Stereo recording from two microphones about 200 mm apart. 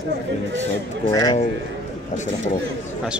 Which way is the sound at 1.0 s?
20° left (ahead or behind).